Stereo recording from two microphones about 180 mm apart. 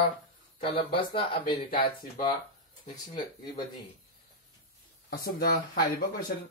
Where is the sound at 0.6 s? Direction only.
30° left (ahead or behind).